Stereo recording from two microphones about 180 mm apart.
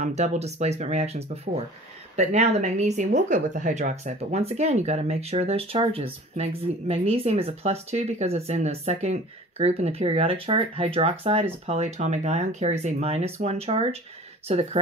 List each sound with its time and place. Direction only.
0.0 s speech: 40° right (ahead or behind)